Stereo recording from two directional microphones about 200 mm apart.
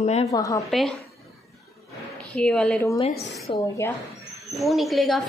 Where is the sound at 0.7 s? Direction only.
Centre (ahead or behind).